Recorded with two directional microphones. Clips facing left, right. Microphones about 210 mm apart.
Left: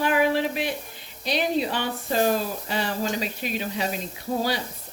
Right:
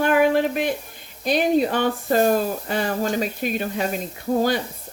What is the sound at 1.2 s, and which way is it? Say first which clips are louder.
Speech: right 6 dB; 50° right (ahead or behind).